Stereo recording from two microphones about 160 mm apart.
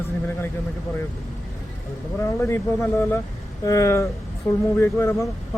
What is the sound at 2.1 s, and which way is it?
A man's voice, 15° left (ahead or behind).